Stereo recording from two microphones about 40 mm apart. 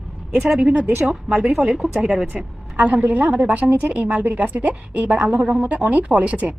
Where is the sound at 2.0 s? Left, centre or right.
Centre.